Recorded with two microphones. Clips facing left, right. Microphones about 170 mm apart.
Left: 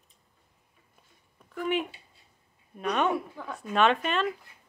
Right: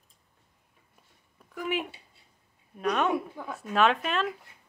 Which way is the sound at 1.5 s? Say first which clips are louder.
Left 2 dB; 5° right (ahead or behind).